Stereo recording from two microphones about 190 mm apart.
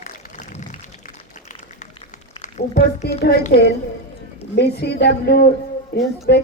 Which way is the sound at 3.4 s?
55° left (ahead or behind).